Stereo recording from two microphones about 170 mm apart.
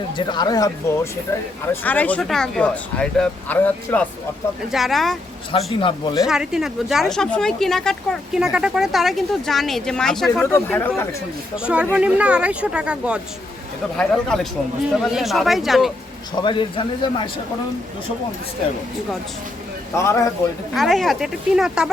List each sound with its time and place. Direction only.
0.2 s speech: 25° left (ahead or behind)
1.3 s speech: 10° left (ahead or behind)
5.7 s speech: 30° left (ahead or behind)
6.2 s speech: 5° right (ahead or behind)
11.6 s speech: 5° right (ahead or behind)
16.3 s speech: 25° left (ahead or behind)
20.0 s speech: 15° left (ahead or behind)
20.7 s speech: centre (ahead or behind)